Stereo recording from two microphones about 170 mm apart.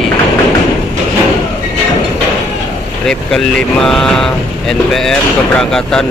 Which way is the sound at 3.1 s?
5° left (ahead or behind).